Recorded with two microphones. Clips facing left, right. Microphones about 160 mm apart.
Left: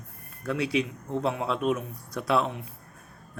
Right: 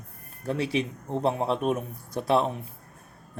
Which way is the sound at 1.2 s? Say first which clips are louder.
Right 2 dB; 40° right (ahead or behind).